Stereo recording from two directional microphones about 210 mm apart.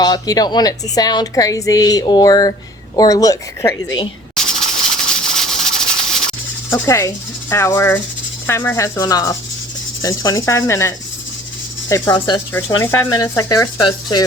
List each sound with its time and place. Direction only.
0.0 s a woman's voice: 20° left (ahead or behind)
4.4 s a sound: centre (ahead or behind)
6.7 s a woman's voice: 15° left (ahead or behind)